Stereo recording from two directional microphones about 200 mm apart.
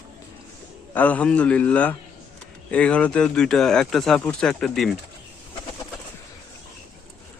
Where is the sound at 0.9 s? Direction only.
5° left (ahead or behind).